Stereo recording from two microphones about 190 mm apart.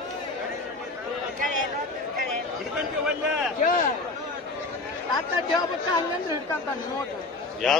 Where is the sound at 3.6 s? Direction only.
45° left (ahead or behind).